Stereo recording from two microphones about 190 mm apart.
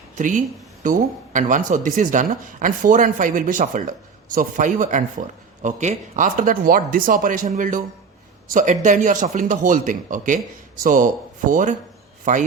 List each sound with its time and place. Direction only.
0.2 s a man's voice: 45° right (ahead or behind)